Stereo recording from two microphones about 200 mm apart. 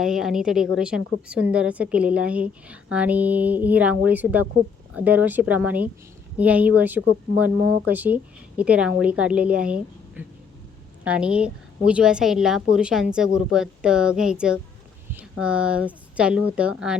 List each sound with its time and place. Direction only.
0.0 s a woman's voice: centre (ahead or behind)